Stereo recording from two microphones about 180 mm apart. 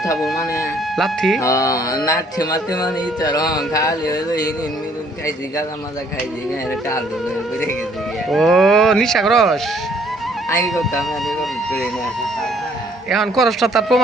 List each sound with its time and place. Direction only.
0.9 s speech: centre (ahead or behind)
1.4 s a sound: 15° left (ahead or behind)
8.3 s speech: centre (ahead or behind)
10.5 s speech: 20° left (ahead or behind)
11.3 s speech: centre (ahead or behind)
13.1 s speech: centre (ahead or behind)